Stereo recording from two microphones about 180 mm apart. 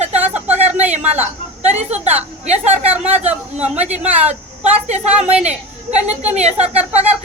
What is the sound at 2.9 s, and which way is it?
Speech, 10° right (ahead or behind).